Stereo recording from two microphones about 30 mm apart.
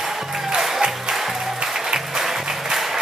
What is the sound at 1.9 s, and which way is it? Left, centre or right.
Music, right.